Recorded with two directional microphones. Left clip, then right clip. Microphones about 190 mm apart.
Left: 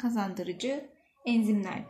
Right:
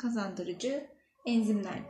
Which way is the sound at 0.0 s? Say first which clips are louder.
Left 3 dB; 50° left (ahead or behind).